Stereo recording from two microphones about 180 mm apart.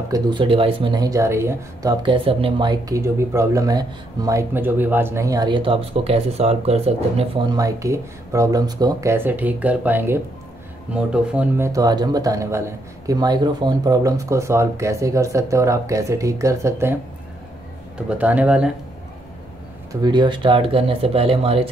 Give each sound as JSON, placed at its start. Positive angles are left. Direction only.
{"t": 0.1, "sound": "speech", "side_deg": -25}
{"t": 19.9, "sound": "speech", "side_deg": -25}